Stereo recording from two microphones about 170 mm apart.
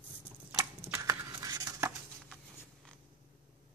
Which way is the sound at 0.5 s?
20° right (ahead or behind).